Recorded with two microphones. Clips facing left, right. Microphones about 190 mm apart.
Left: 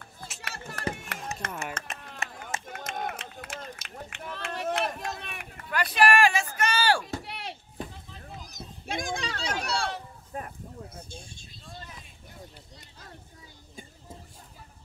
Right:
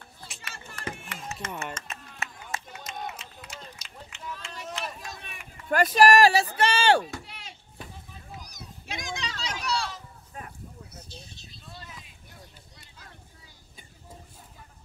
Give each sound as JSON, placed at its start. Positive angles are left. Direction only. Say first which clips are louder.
{"t": 0.4, "sound": "a sound", "louder": "left 6 dB", "side_deg": 65}
{"t": 0.9, "sound": "chop", "louder": "left 2 dB", "side_deg": 65}
{"t": 1.7, "sound": "run", "louder": "left 1 dB", "side_deg": 60}
{"t": 5.7, "sound": "speech", "louder": "right 4 dB", "side_deg": -45}
{"t": 7.2, "sound": "chop", "louder": "left 8 dB", "side_deg": 65}
{"t": 8.5, "sound": "cat", "louder": "left 4 dB", "side_deg": 50}
{"t": 10.9, "sound": "a sound", "louder": "left 2 dB", "side_deg": 50}